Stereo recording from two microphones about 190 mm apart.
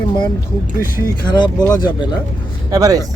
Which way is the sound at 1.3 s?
20° left (ahead or behind).